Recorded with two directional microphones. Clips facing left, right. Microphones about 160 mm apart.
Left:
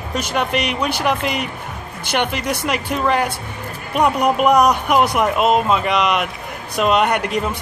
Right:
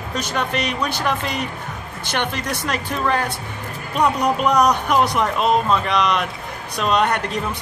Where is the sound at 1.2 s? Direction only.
65° left (ahead or behind).